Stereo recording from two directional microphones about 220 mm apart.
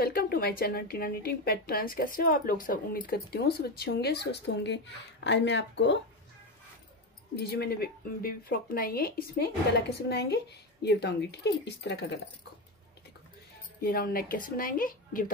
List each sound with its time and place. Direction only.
0.0 s speech: 45° left (ahead or behind)
7.3 s speech: 45° left (ahead or behind)
13.7 s speech: 40° left (ahead or behind)